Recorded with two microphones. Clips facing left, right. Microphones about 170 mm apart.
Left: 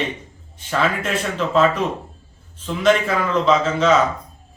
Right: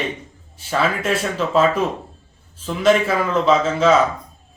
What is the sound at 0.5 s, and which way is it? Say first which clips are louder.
A man's voice: right 1 dB; 10° right (ahead or behind).